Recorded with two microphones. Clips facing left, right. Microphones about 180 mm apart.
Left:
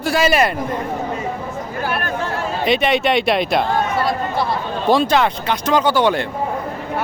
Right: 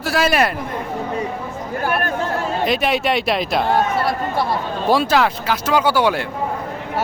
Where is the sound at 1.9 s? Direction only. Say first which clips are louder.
Right 3 dB; 50° right (ahead or behind).